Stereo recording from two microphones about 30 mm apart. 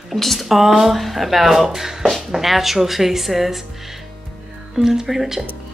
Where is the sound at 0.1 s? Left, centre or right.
Centre.